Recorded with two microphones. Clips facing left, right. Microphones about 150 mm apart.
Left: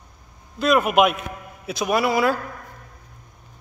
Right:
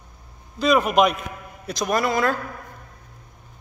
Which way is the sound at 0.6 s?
5° left (ahead or behind).